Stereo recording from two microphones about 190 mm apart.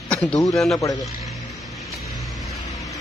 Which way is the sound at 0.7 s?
20° left (ahead or behind).